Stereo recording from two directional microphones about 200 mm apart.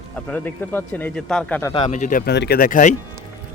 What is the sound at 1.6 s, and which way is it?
Speech, 25° left (ahead or behind).